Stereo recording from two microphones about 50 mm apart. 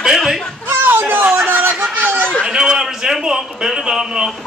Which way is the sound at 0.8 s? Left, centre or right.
Right.